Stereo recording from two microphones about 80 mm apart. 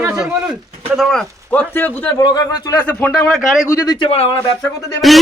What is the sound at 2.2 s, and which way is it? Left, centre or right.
Speech, left.